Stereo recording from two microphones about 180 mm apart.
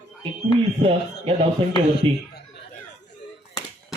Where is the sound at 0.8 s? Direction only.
30° right (ahead or behind).